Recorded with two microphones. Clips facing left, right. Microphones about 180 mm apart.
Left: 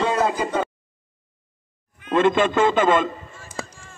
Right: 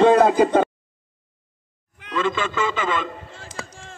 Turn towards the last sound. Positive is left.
turn(degrees=-90)